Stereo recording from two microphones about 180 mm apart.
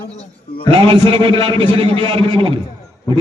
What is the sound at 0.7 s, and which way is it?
A man's voice, 30° right (ahead or behind).